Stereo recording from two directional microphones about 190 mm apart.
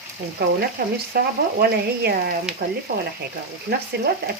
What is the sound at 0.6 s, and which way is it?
Frying, 50° right (ahead or behind).